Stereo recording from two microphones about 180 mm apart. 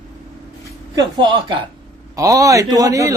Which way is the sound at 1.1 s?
25° right (ahead or behind).